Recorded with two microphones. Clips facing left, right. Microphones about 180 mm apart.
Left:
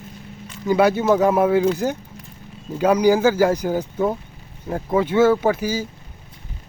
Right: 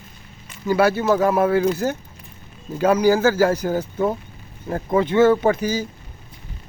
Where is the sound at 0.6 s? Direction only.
15° left (ahead or behind).